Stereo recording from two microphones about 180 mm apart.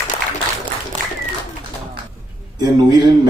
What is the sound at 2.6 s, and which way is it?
Speech, 20° right (ahead or behind).